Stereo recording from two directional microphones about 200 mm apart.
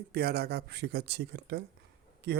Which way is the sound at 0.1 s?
50° right (ahead or behind).